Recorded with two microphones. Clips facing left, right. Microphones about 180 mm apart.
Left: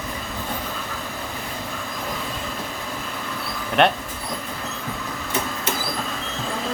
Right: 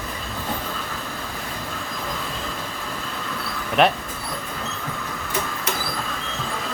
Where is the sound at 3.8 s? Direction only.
Centre (ahead or behind).